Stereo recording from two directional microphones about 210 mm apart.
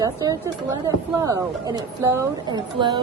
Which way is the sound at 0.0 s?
15° right (ahead or behind).